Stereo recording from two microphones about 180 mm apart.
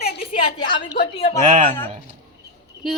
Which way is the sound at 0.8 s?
60° left (ahead or behind).